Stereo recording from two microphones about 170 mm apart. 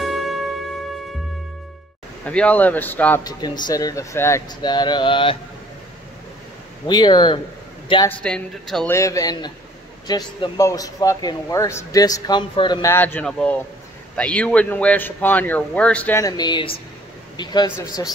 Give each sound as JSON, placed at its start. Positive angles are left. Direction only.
{"t": 0.0, "sound": "music", "side_deg": 0}
{"t": 2.2, "sound": "speech", "side_deg": 10}
{"t": 3.3, "sound": "speech", "side_deg": 25}
{"t": 6.9, "sound": "speech", "side_deg": 25}
{"t": 8.2, "sound": "speech", "side_deg": 5}
{"t": 8.9, "sound": "speech", "side_deg": 20}
{"t": 12.9, "sound": "speech", "side_deg": 10}
{"t": 16.2, "sound": "speech", "side_deg": 20}